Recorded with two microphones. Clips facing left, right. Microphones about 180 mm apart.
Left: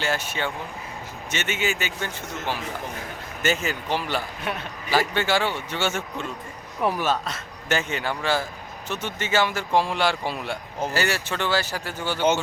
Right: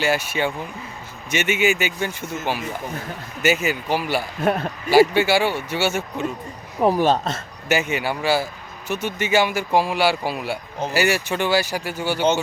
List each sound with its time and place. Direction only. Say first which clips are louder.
0.0 s speech: right 5 dB; 10° right (ahead or behind)
4.4 s a man's voice: right 10 dB; 45° right (ahead or behind)
4.9 s speech: right 8 dB; 10° right (ahead or behind)
6.7 s a man's voice: right 6 dB; 40° right (ahead or behind)
7.7 s speech: right 4 dB; 10° right (ahead or behind)